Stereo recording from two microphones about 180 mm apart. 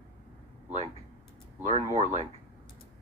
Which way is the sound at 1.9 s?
40° right (ahead or behind).